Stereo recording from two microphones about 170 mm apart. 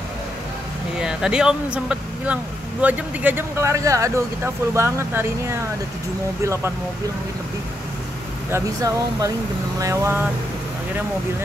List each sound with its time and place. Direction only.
0.9 s speech: 5° right (ahead or behind)
8.5 s speech: 15° right (ahead or behind)